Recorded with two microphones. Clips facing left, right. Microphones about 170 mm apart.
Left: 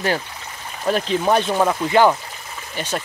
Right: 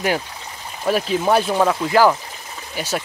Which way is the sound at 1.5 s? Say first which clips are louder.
Even; 5° left (ahead or behind).